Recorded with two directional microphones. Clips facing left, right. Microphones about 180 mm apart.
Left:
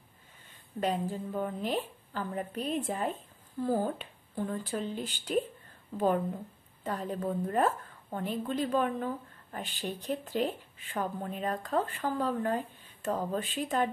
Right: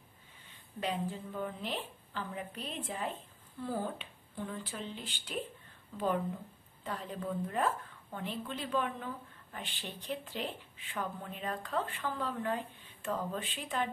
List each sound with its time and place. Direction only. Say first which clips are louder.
0.7 s a woman's voice: left 5 dB; 45° left (ahead or behind)
6.8 s a woman's voice: left 6 dB; 45° left (ahead or behind)